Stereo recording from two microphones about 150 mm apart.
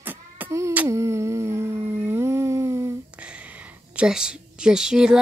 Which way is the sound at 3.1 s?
10° right (ahead or behind).